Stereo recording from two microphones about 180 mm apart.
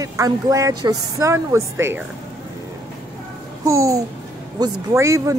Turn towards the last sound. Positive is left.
turn(degrees=-15)  # may be behind; listen again after turning